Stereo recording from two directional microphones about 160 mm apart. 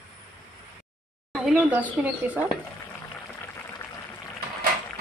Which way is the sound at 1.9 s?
10° right (ahead or behind).